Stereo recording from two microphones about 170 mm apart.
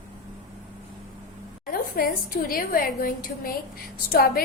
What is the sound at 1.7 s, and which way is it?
Child singing, 60° left (ahead or behind).